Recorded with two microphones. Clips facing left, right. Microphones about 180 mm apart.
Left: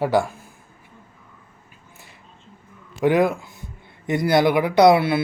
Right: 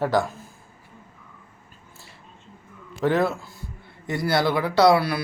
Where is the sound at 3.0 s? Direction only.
15° left (ahead or behind).